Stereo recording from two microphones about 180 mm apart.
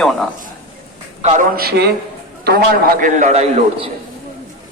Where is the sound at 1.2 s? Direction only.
45° right (ahead or behind).